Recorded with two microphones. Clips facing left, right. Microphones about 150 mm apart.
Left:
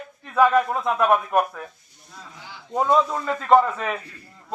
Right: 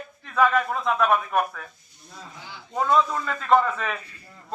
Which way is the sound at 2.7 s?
10° left (ahead or behind).